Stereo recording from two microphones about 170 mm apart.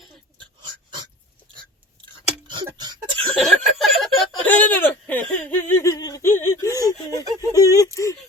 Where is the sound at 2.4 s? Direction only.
25° right (ahead or behind).